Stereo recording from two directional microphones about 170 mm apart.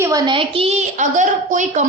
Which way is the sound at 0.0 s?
20° right (ahead or behind).